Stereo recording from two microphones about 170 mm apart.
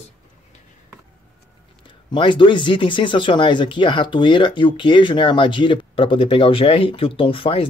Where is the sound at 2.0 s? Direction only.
30° left (ahead or behind).